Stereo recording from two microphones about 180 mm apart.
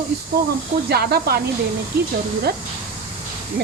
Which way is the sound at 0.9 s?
60° right (ahead or behind).